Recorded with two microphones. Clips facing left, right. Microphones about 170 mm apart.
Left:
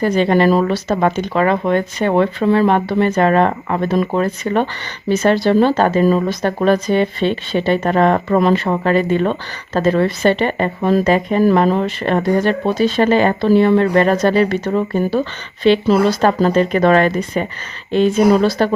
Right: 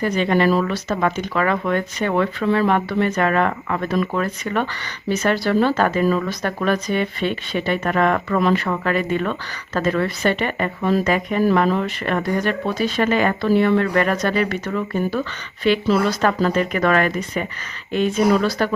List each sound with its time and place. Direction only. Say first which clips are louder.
0.0 s speech: left 5 dB; 30° left (ahead or behind)